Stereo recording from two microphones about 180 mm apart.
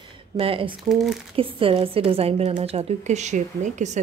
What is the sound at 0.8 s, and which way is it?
Speech, centre (ahead or behind).